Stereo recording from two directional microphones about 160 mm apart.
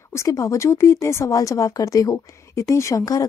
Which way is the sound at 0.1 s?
20° left (ahead or behind).